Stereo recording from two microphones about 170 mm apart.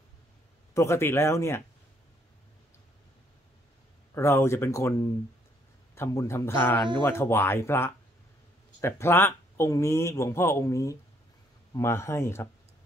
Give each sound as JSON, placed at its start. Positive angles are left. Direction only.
{"t": 0.7, "sound": "speech", "side_deg": 15}
{"t": 4.1, "sound": "speech", "side_deg": 15}
{"t": 5.9, "sound": "speech", "side_deg": 15}